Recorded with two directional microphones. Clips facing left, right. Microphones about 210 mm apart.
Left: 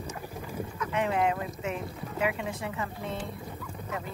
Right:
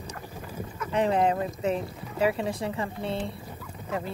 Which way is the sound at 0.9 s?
35° right (ahead or behind).